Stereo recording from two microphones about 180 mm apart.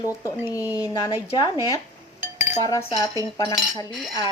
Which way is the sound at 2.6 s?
20° left (ahead or behind).